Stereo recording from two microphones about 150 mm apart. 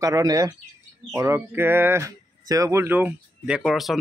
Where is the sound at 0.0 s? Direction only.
25° right (ahead or behind).